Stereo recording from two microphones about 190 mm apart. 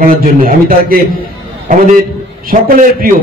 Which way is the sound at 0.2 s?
50° right (ahead or behind).